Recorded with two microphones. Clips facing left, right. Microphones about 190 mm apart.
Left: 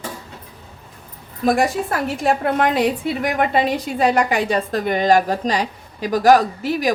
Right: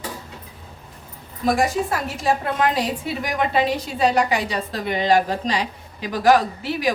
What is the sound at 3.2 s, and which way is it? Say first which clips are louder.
A woman's voice: left 1 dB; 55° left (ahead or behind).